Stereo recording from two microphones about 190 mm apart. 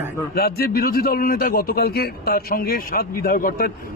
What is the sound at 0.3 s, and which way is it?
A man's voice, 55° left (ahead or behind).